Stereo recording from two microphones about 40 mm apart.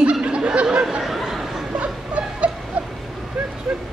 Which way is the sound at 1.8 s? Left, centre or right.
Right.